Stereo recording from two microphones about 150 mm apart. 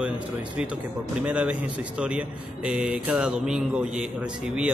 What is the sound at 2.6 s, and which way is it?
Speech, 5° right (ahead or behind).